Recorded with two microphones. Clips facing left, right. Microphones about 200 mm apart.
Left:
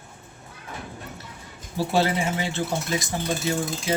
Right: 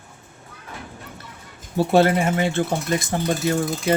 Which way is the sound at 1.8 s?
55° right (ahead or behind).